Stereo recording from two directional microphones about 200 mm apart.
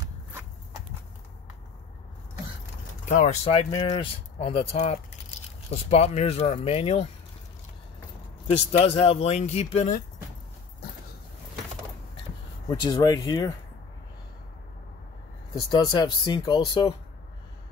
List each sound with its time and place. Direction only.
3.1 s speech: 40° left (ahead or behind)
3.4 s speech: 30° left (ahead or behind)
8.5 s speech: 30° left (ahead or behind)
12.6 s speech: 20° left (ahead or behind)
15.7 s speech: 20° left (ahead or behind)